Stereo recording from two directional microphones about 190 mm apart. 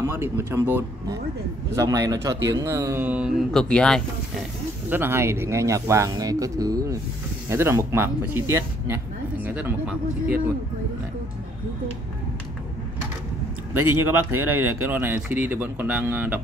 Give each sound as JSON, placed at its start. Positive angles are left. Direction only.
{"t": 0.0, "sound": "speech", "side_deg": -10}
{"t": 4.8, "sound": "speech", "side_deg": -10}
{"t": 13.8, "sound": "speech", "side_deg": -10}